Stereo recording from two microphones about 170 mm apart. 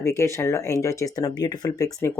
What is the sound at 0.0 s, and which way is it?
Speech, 15° left (ahead or behind).